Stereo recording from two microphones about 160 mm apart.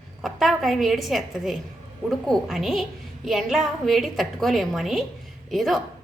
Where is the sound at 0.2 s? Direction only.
Centre (ahead or behind).